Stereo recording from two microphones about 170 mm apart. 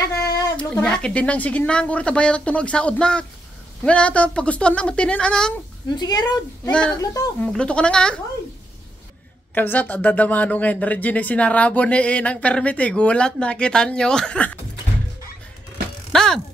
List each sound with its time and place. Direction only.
0.6 s speech: 5° left (ahead or behind)
5.9 s speech: 25° left (ahead or behind)
6.7 s speech: 5° left (ahead or behind)
7.0 s speech: 20° left (ahead or behind)
7.5 s speech: 5° left (ahead or behind)
9.5 s speech: 10° left (ahead or behind)
16.1 s thunk: 5° left (ahead or behind)